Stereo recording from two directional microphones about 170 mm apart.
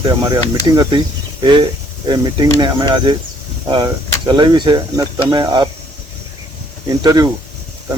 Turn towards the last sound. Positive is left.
turn(degrees=-20)  # may be behind; listen again after turning